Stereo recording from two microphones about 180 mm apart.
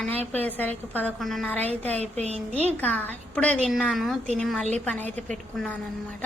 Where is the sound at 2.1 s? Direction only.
40° right (ahead or behind).